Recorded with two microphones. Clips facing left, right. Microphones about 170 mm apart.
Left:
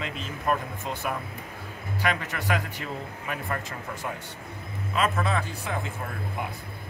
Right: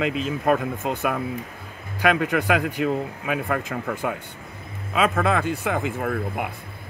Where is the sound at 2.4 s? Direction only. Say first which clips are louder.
Right 8 dB; 60° right (ahead or behind).